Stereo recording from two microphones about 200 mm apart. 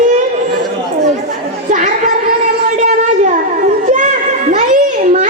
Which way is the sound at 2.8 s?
40° right (ahead or behind).